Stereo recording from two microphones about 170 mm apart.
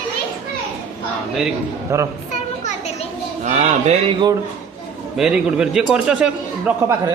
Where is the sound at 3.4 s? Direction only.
45° right (ahead or behind).